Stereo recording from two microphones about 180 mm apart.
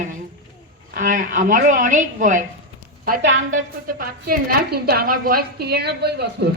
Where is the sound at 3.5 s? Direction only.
50° right (ahead or behind).